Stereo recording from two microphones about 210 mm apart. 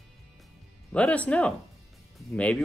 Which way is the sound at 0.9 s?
5° left (ahead or behind).